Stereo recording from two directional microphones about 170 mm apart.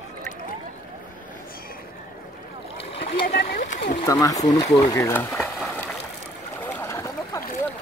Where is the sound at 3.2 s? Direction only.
55° left (ahead or behind).